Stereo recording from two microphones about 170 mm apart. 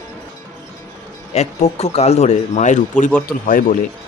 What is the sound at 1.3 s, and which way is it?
Speech, 40° left (ahead or behind).